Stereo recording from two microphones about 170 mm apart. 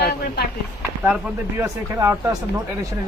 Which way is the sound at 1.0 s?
5° right (ahead or behind).